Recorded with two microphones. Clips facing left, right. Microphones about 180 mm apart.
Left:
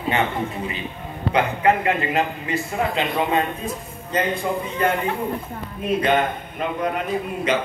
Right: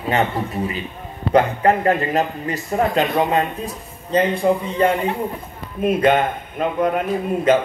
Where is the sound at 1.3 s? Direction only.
40° right (ahead or behind).